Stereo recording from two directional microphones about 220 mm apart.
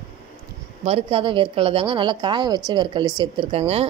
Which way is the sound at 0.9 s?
25° right (ahead or behind).